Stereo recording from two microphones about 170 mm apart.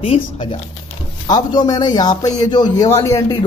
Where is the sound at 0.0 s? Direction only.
30° left (ahead or behind).